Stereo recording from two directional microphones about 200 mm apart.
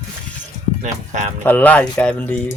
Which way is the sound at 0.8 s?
35° right (ahead or behind).